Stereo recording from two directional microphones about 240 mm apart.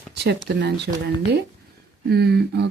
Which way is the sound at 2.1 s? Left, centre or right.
Right.